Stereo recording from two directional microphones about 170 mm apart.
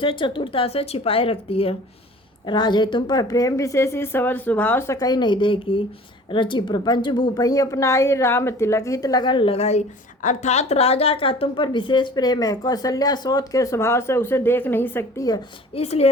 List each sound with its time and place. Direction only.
0.0 s a woman's voice: 30° left (ahead or behind); by 15.3 s 10° left (ahead or behind)
15.7 s speech: 40° left (ahead or behind)